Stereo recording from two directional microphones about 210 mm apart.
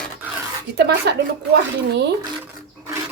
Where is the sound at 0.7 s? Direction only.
50° right (ahead or behind).